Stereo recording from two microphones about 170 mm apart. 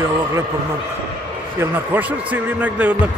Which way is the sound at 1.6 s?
10° right (ahead or behind).